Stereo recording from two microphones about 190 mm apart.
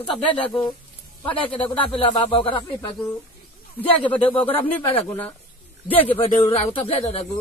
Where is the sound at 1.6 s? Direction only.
30° left (ahead or behind).